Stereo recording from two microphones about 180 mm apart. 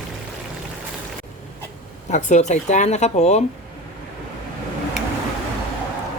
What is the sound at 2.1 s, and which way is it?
Speech, 40° left (ahead or behind).